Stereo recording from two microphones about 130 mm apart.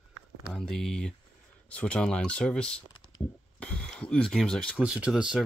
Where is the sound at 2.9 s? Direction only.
30° left (ahead or behind).